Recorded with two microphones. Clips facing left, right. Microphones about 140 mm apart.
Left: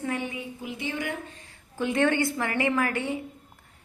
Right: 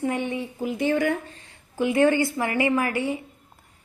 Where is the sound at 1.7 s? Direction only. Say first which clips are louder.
Right 4 dB; 10° right (ahead or behind).